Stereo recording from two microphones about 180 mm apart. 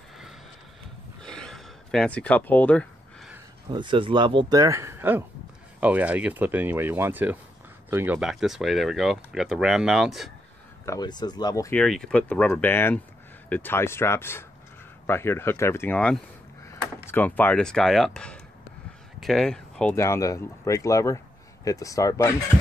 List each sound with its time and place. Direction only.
1.2 s a sound: 5° left (ahead or behind)
3.7 s speech: 25° right (ahead or behind); by 10.3 s centre (ahead or behind)
10.9 s speech: 25° left (ahead or behind)
11.7 s speech: 5° left (ahead or behind)